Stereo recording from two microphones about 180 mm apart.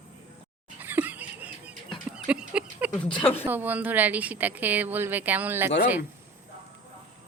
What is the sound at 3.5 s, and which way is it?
A woman's voice, 10° right (ahead or behind).